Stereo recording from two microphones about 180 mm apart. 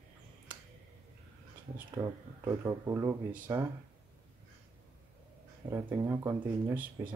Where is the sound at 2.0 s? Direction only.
15° right (ahead or behind).